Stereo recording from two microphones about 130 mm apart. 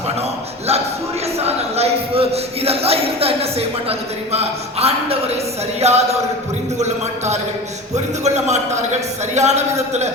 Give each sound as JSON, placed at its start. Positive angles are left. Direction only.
{"t": 1.4, "sound": "a man's voice", "side_deg": -55}